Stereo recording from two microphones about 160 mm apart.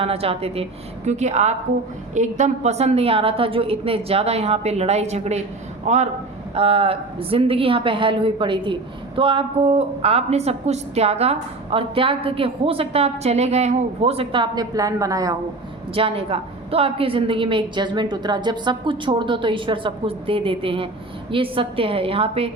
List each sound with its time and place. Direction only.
0.0 s a man's voice: 40° right (ahead or behind)
16.0 s a man's voice: 35° right (ahead or behind)